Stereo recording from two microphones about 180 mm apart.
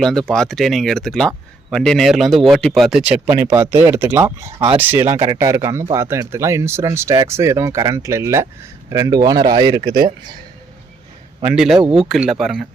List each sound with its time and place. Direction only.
0.0 s speech: centre (ahead or behind); by 10.1 s 25° right (ahead or behind)
11.4 s speech: centre (ahead or behind)